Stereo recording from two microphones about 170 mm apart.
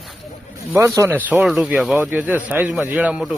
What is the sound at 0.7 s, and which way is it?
A man's voice, 15° right (ahead or behind).